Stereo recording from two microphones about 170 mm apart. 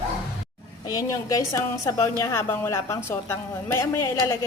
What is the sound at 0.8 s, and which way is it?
A woman's voice, 20° left (ahead or behind).